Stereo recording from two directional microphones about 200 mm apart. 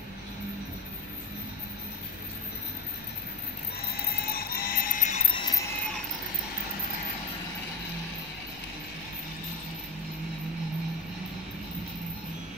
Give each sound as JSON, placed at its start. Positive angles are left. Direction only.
{"t": 4.3, "sound": "music", "side_deg": 50}
{"t": 5.4, "sound": "jingle bell", "side_deg": 15}